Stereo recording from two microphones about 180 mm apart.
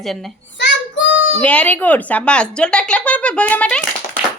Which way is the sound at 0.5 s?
80° left.